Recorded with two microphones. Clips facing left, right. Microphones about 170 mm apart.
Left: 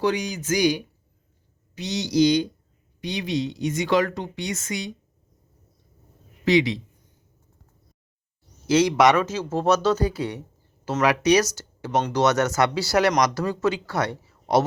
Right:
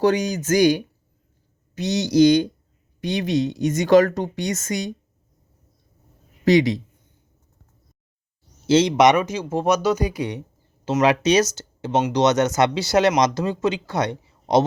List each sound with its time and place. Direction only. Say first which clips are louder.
0.0 s speech: right 5 dB; 45° right (ahead or behind)
6.4 s speech: right 3 dB; 40° right (ahead or behind)
8.6 s speech: right 2 dB; 25° right (ahead or behind)